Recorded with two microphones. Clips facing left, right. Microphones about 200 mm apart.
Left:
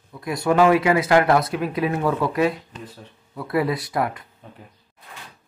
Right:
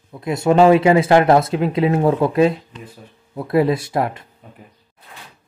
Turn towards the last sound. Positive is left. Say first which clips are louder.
# right 4 dB
turn(degrees=-25)  # may be behind; listen again after turning